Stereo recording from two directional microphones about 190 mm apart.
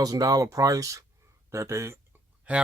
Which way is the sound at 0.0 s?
20° right (ahead or behind).